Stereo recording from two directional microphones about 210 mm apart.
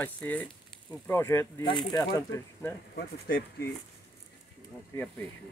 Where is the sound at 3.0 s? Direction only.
45° left (ahead or behind).